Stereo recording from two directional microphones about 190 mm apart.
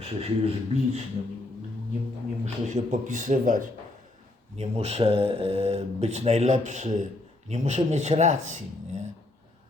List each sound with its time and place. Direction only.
0.0 s a man's voice: 30° right (ahead or behind)
2.4 s a man's voice: 40° right (ahead or behind)
4.5 s a man's voice: 35° right (ahead or behind)